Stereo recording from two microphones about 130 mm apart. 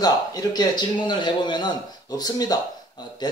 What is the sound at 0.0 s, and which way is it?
A man's voice, 30° left (ahead or behind).